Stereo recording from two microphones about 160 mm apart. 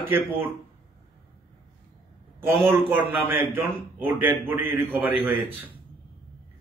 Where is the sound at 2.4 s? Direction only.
15° right (ahead or behind).